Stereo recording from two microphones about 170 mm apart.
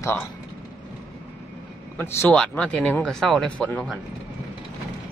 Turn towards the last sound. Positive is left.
turn(degrees=5)  # may be behind; listen again after turning